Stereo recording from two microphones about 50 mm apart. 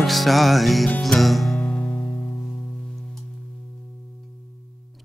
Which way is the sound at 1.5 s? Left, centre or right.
Centre.